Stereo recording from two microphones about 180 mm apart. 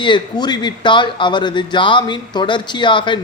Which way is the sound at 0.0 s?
25° left (ahead or behind).